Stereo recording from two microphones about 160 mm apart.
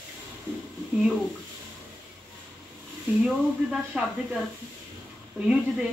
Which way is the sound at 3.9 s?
5° right (ahead or behind).